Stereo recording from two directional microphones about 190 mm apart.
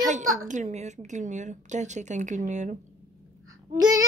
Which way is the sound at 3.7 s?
20° right (ahead or behind).